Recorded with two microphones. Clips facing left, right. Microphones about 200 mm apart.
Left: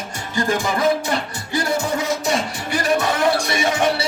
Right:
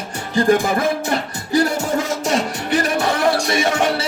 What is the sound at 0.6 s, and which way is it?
Music, 45° right (ahead or behind).